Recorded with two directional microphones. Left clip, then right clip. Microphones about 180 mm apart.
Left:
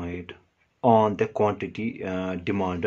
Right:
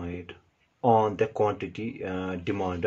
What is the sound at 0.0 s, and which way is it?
Speech, 20° left (ahead or behind).